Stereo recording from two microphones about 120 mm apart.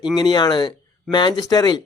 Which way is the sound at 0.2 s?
35° left (ahead or behind).